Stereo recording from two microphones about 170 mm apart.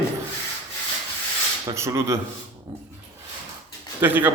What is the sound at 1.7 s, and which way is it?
Speech, 15° right (ahead or behind).